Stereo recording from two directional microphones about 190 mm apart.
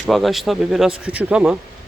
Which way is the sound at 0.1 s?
Centre (ahead or behind).